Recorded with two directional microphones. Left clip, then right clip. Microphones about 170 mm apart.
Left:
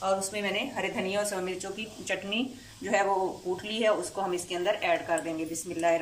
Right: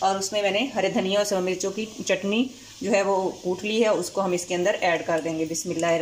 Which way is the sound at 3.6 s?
25° right (ahead or behind).